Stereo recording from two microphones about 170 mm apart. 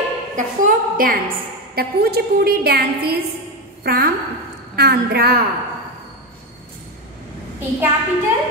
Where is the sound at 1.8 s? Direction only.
65° right (ahead or behind).